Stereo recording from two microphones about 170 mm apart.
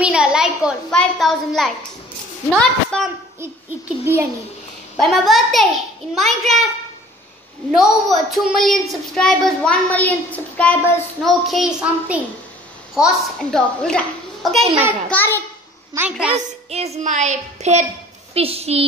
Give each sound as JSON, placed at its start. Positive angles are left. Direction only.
{"t": 0.0, "sound": "a child's voice", "side_deg": -5}
{"t": 4.0, "sound": "a woman's voice", "side_deg": -15}
{"t": 4.9, "sound": "a child's voice", "side_deg": 0}
{"t": 7.7, "sound": "a child's voice", "side_deg": 0}
{"t": 15.9, "sound": "a woman's voice", "side_deg": -15}
{"t": 16.3, "sound": "music", "side_deg": -40}